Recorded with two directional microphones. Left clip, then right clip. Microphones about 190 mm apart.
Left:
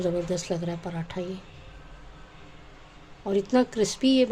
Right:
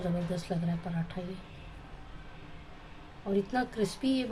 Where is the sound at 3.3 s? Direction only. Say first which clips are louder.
Left 8 dB; 45° left (ahead or behind).